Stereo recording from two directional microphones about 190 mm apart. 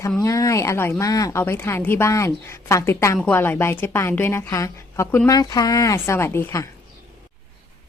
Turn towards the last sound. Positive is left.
turn(degrees=15)  # may be behind; listen again after turning